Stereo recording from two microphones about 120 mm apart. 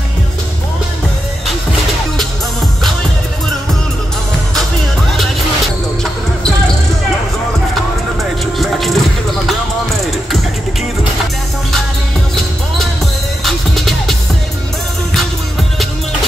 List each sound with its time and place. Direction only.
7.7 s music: centre (ahead or behind)
13.4 s music: centre (ahead or behind)